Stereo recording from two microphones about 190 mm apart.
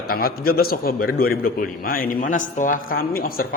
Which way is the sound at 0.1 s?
50° left (ahead or behind).